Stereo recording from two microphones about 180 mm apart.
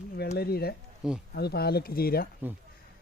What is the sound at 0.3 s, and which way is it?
Speech, 60° left (ahead or behind).